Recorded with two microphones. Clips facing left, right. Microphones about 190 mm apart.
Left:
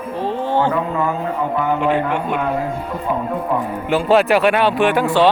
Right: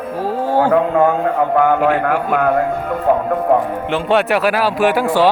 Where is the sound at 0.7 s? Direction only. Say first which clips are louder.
Right 7 dB; 60° right (ahead or behind).